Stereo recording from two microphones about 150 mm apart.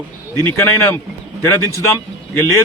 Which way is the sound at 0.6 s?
15° left (ahead or behind).